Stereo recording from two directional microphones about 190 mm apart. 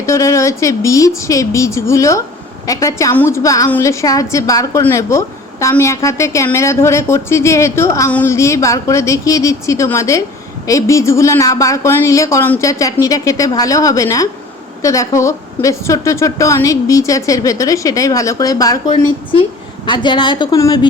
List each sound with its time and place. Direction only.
0.0 s a woman's voice: 15° left (ahead or behind)